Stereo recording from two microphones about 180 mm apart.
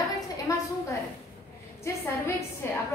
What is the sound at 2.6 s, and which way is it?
Speech, 15° left (ahead or behind).